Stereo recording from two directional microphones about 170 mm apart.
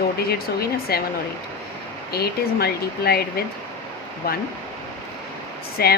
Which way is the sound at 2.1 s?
65° left (ahead or behind).